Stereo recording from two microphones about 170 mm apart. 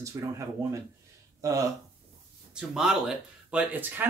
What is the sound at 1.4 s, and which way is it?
Speech, 20° right (ahead or behind).